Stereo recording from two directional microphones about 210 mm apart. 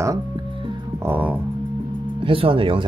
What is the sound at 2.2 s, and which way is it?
Speech, 25° right (ahead or behind).